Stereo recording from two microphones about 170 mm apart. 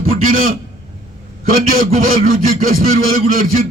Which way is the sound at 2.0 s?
55° right (ahead or behind).